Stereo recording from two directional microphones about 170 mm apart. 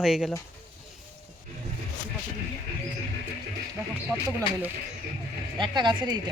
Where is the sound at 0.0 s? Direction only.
5° right (ahead or behind).